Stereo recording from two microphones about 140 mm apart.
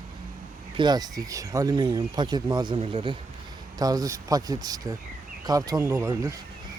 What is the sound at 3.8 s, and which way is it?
Speech, 25° right (ahead or behind).